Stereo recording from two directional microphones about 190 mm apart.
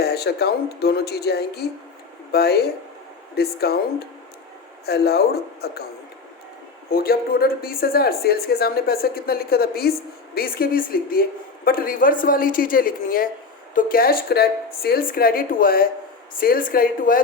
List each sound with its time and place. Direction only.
0.0 s speech: 55° left (ahead or behind)
6.9 s speech: 50° left (ahead or behind)